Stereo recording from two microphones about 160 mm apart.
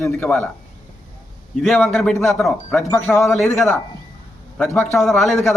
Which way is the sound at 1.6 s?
Centre (ahead or behind).